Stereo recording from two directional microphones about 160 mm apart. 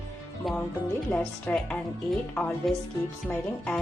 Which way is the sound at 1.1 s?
5° left (ahead or behind).